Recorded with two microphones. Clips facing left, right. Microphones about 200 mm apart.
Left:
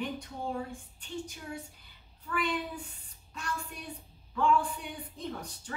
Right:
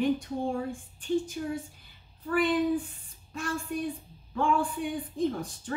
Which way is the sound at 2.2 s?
50° right (ahead or behind).